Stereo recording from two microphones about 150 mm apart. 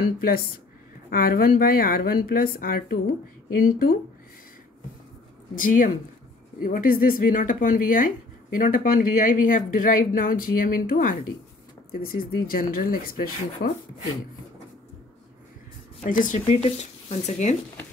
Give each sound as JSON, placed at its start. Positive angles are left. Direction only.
{"t": 0.0, "sound": "a woman's voice", "side_deg": 80}
{"t": 5.5, "sound": "speech", "side_deg": 65}
{"t": 16.1, "sound": "speech", "side_deg": 60}
{"t": 16.4, "sound": "speech", "side_deg": 40}